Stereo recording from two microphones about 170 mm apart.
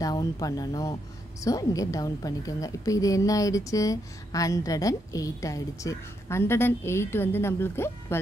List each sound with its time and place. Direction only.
0.0 s a woman's voice: 20° left (ahead or behind)